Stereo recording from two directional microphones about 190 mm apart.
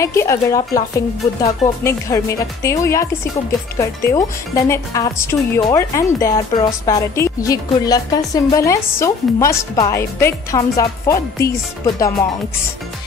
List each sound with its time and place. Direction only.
0.0 s speech: 15° left (ahead or behind)